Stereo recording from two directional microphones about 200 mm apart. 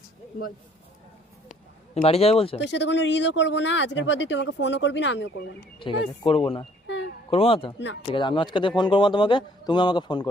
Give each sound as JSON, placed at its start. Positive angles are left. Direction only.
{"t": 2.0, "sound": "a man's voice", "side_deg": 30}
{"t": 2.6, "sound": "speech", "side_deg": 60}
{"t": 5.8, "sound": "a man's voice", "side_deg": 25}
{"t": 6.8, "sound": "a sound", "side_deg": 60}
{"t": 7.3, "sound": "a man's voice", "side_deg": 30}